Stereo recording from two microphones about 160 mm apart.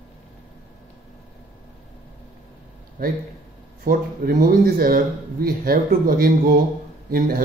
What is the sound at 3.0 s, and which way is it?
Speech, 60° right (ahead or behind).